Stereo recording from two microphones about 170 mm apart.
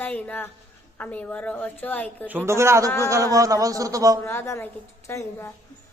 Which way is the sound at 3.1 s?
20° right (ahead or behind).